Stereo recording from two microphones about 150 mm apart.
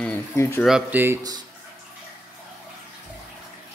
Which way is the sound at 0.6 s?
10° right (ahead or behind).